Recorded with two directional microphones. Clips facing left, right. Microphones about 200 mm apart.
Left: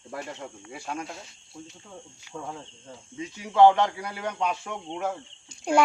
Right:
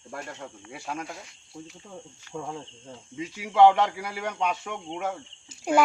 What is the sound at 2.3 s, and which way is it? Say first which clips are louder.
Speech: right 2 dB; 10° right (ahead or behind).